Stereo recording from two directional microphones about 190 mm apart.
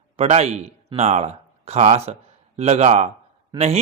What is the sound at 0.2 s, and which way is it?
A man's voice, 35° right (ahead or behind).